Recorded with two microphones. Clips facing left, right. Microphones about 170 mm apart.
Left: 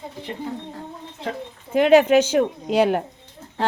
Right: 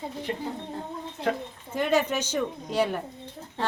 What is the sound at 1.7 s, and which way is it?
A woman's voice, 70° left (ahead or behind).